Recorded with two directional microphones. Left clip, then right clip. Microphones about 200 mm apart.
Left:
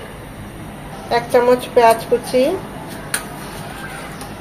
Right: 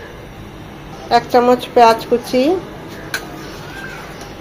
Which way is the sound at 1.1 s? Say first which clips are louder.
Right 2 dB; 30° right (ahead or behind).